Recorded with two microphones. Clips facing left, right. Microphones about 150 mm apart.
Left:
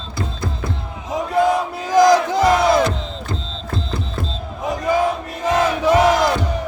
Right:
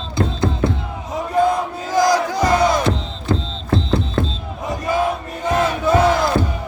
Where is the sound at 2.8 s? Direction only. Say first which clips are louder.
Right 3 dB; 30° right (ahead or behind).